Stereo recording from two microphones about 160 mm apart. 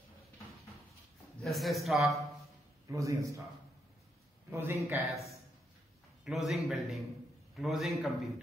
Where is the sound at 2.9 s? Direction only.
20° right (ahead or behind).